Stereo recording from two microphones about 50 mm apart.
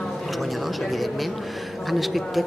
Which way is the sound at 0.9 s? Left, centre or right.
Centre.